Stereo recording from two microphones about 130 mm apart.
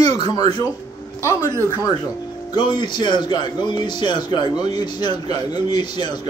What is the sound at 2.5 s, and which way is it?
A man's voice, 35° left (ahead or behind).